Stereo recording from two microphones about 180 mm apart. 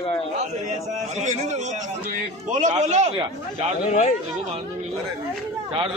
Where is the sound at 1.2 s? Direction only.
40° right (ahead or behind).